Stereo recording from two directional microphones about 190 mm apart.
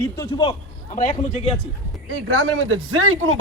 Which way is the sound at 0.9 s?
40° left (ahead or behind).